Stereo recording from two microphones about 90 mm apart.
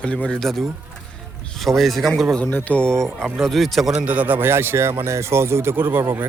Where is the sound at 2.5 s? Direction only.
20° left (ahead or behind).